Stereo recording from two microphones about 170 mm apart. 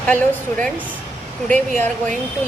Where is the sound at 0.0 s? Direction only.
10° left (ahead or behind).